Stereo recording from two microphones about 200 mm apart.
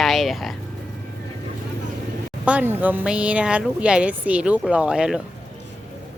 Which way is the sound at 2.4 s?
5° right (ahead or behind).